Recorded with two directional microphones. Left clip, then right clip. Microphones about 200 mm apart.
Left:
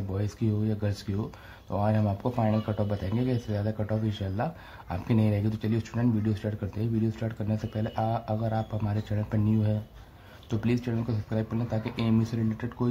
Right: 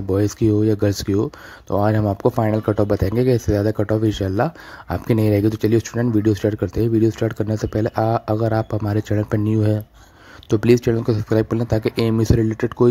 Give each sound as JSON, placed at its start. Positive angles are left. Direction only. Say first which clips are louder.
{"t": 0.1, "sound": "speech", "louder": "right 16 dB", "side_deg": -40}